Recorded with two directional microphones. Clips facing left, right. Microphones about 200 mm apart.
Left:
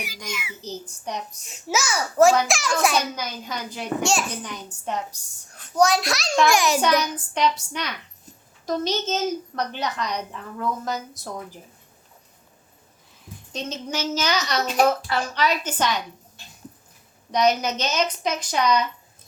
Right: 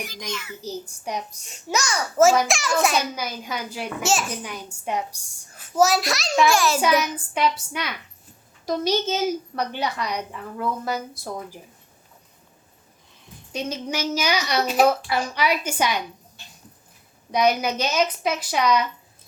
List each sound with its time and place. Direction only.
0.3 s a child's voice: 10° left (ahead or behind)
0.6 s a woman's voice: 10° right (ahead or behind)
1.5 s a child's voice: 5° left (ahead or behind)
6.5 s a child's voice: 15° left (ahead or behind)
6.8 s a child's voice: 5° right (ahead or behind)
13.5 s a woman's voice: 10° right (ahead or behind)
17.3 s a woman's voice: 10° right (ahead or behind)